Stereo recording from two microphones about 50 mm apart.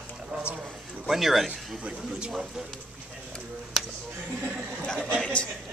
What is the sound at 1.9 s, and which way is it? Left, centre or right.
Speech, centre.